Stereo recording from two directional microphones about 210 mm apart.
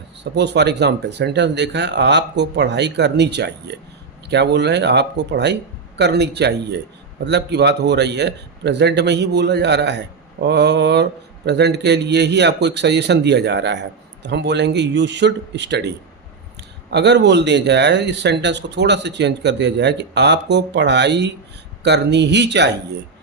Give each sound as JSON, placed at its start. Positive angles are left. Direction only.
{"t": 0.3, "sound": "a man's voice", "side_deg": -55}